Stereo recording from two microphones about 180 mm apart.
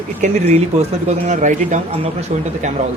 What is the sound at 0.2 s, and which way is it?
Speech, 35° right (ahead or behind).